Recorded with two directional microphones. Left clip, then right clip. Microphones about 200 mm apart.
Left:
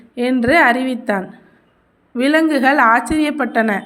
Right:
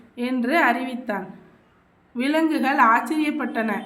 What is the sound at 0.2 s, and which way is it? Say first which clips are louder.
A woman's voice: left 8 dB; 40° left (ahead or behind).